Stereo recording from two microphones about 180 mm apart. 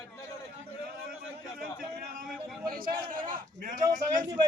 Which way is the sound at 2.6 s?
50° right (ahead or behind).